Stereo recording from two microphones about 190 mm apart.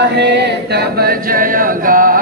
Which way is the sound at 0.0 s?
65° right (ahead or behind).